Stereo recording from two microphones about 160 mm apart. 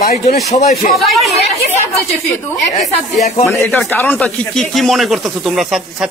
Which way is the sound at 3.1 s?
45° left (ahead or behind).